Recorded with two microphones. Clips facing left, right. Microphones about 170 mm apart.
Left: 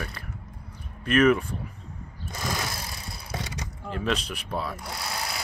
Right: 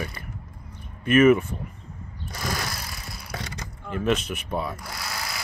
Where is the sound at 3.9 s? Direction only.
5° right (ahead or behind).